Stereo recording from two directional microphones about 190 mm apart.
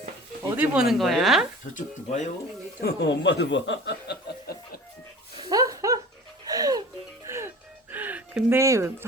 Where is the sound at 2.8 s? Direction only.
60° left (ahead or behind).